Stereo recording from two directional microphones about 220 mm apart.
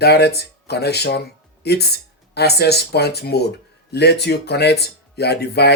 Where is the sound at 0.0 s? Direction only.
45° left (ahead or behind).